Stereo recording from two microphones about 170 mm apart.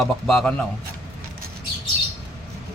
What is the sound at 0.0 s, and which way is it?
Speech, 5° left (ahead or behind).